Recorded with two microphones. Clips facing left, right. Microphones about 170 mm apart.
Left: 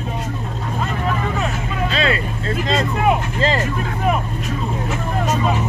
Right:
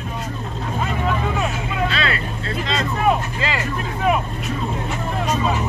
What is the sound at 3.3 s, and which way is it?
Vehicle, 40° left (ahead or behind).